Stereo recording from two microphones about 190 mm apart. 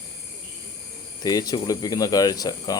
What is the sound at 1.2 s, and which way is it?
Speech, 20° left (ahead or behind).